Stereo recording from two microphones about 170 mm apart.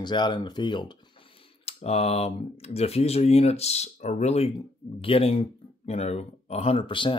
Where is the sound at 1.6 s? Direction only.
35° left (ahead or behind).